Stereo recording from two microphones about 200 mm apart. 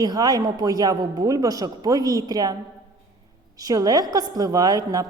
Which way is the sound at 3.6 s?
20° right (ahead or behind).